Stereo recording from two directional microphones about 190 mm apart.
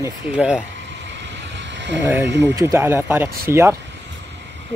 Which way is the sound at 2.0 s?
15° right (ahead or behind).